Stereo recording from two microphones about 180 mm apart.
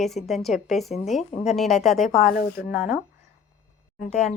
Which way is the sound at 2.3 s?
50° left (ahead or behind).